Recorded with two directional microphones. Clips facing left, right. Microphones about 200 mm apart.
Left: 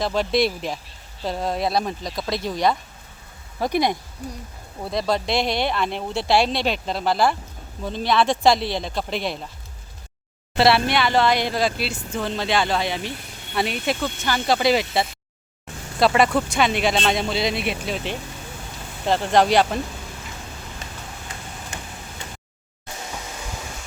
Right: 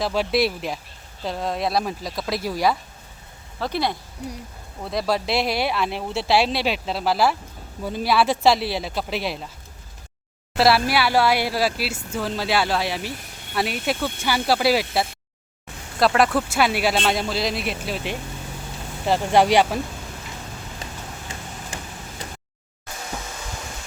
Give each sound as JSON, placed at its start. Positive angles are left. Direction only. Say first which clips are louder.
{"t": 0.0, "sound": "speech", "louder": "left 1 dB", "side_deg": -5}
{"t": 3.6, "sound": "speech", "louder": "left 3 dB", "side_deg": 15}
{"t": 4.8, "sound": "speech", "louder": "even", "side_deg": 0}
{"t": 10.6, "sound": "speech", "louder": "even", "side_deg": 0}